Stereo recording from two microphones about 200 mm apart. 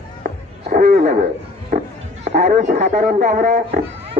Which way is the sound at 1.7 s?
40° right (ahead or behind).